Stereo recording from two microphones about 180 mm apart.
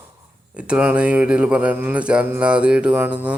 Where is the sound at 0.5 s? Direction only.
5° right (ahead or behind).